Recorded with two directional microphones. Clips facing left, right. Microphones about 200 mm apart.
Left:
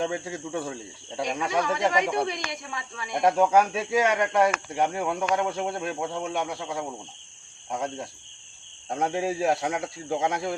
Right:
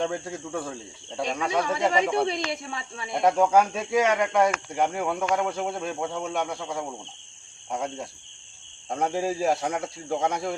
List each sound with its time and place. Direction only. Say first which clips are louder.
0.0 s speech: even; centre (ahead or behind)
1.9 s speech: right 2 dB; 30° right (ahead or behind)
3.1 s speech: even; centre (ahead or behind)